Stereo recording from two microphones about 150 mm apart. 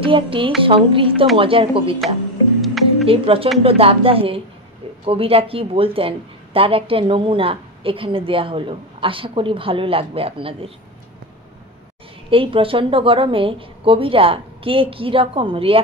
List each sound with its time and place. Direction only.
0.0 s music: 35° right (ahead or behind)
0.7 s a woman's voice: 35° right (ahead or behind)
2.6 s music: centre (ahead or behind)
3.1 s a woman's voice: 40° right (ahead or behind)
12.3 s a woman's voice: 35° right (ahead or behind)